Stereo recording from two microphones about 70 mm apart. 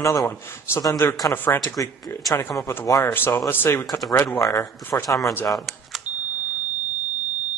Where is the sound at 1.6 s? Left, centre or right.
Left.